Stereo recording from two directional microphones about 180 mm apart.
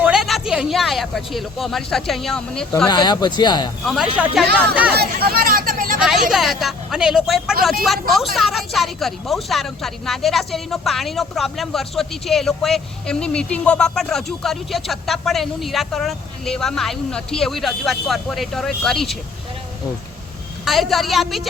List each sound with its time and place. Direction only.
0.0 s a woman's voice: centre (ahead or behind)
2.9 s speech: 25° left (ahead or behind)
3.8 s a woman's voice: centre (ahead or behind)
4.9 s speech: 55° right (ahead or behind)
6.3 s a woman's voice: centre (ahead or behind)
20.7 s a woman's voice: centre (ahead or behind)